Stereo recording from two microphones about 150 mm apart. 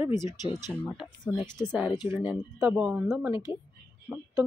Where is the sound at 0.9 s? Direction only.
5° right (ahead or behind).